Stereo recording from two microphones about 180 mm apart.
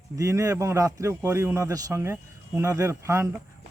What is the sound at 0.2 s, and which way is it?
A man's voice, 15° right (ahead or behind).